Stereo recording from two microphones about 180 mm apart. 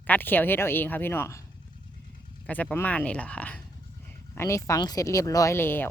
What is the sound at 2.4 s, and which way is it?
Speech, 10° left (ahead or behind).